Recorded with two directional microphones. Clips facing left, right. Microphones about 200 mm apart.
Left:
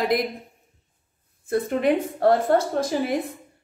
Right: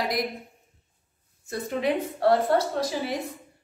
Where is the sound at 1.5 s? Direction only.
55° left (ahead or behind).